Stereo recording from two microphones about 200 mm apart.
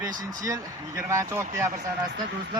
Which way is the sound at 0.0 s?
20° right (ahead or behind).